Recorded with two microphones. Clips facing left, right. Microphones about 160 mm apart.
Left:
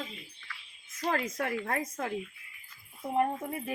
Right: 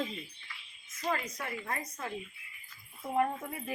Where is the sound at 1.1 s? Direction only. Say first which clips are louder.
Left 4 dB; 70° left (ahead or behind).